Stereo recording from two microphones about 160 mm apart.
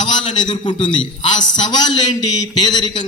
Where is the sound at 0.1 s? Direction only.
30° left (ahead or behind).